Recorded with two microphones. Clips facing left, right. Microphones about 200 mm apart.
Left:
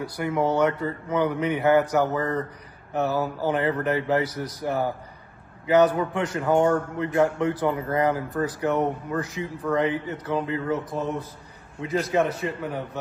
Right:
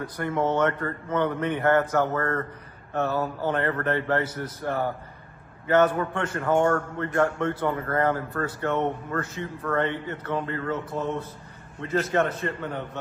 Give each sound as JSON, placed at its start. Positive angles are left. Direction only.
{"t": 0.0, "sound": "speech", "side_deg": 10}